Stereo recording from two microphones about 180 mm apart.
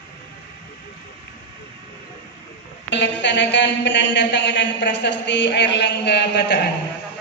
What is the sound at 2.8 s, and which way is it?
A man's voice, 75° left (ahead or behind).